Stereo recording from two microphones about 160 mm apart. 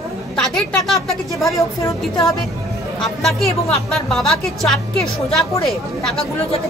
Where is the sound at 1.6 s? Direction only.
20° left (ahead or behind).